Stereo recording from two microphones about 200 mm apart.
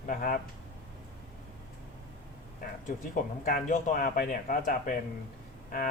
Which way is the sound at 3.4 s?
40° left (ahead or behind).